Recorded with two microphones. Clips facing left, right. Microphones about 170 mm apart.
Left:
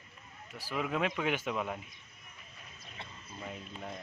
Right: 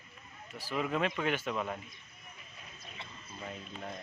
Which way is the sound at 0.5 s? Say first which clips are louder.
Right 1 dB; 10° left (ahead or behind).